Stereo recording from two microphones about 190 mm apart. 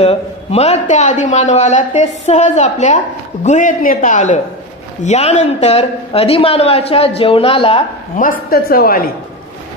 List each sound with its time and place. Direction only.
0.0 s a man's voice: 30° left (ahead or behind)
8.2 s a woman's voice: 50° left (ahead or behind)